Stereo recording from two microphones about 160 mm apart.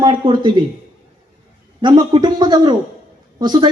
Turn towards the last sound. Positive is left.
turn(degrees=-25)  # may be behind; listen again after turning